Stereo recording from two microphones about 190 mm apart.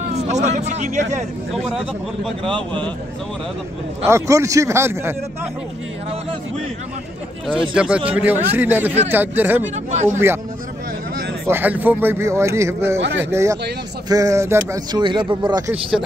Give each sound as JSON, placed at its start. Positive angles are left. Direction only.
{"t": 0.1, "sound": "speech", "side_deg": -35}
{"t": 1.5, "sound": "speech", "side_deg": 0}
{"t": 2.4, "sound": "speech", "side_deg": -25}
{"t": 4.1, "sound": "speech", "side_deg": -15}
{"t": 7.7, "sound": "speech", "side_deg": -5}
{"t": 9.8, "sound": "speech", "side_deg": -40}
{"t": 10.1, "sound": "speech", "side_deg": -10}
{"t": 11.4, "sound": "speech", "side_deg": -10}